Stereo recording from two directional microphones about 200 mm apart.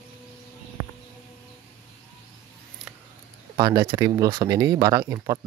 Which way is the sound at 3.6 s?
20° right (ahead or behind).